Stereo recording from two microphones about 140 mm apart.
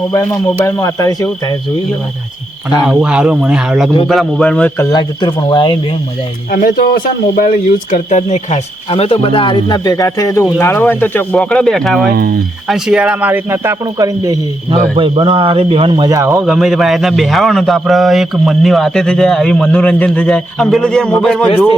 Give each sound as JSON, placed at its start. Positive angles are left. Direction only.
{"t": 0.6, "sound": "speech", "side_deg": 25}
{"t": 2.8, "sound": "a man's voice", "side_deg": -5}
{"t": 4.8, "sound": "speech", "side_deg": 30}
{"t": 6.5, "sound": "speech", "side_deg": 80}
{"t": 12.1, "sound": "speech", "side_deg": -90}
{"t": 12.6, "sound": "speech", "side_deg": -5}
{"t": 14.9, "sound": "speech", "side_deg": -35}
{"t": 16.4, "sound": "a man's voice", "side_deg": -5}